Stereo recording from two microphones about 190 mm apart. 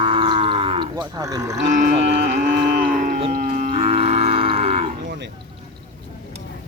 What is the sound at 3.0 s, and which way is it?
Livestock, 40° right (ahead or behind).